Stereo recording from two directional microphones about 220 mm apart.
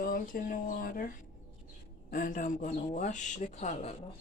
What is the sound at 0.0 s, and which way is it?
Speech, 40° left (ahead or behind).